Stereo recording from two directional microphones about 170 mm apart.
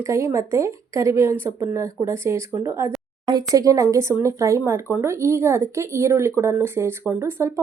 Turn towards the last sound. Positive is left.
turn(degrees=-15)  # may be behind; listen again after turning